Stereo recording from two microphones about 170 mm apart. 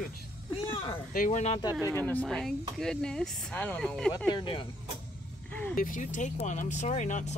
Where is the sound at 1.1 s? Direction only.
50° left (ahead or behind).